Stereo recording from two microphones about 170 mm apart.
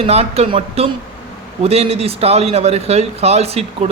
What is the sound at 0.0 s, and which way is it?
Speech, 35° right (ahead or behind).